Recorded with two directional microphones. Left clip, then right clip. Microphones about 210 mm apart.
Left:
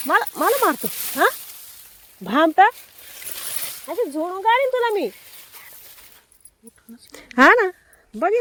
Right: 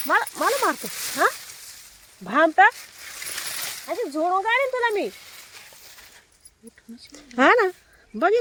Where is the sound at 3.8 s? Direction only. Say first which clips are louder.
Left 1 dB; 45° left (ahead or behind).